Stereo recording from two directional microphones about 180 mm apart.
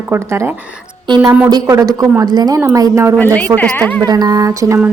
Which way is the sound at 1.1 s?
25° right (ahead or behind).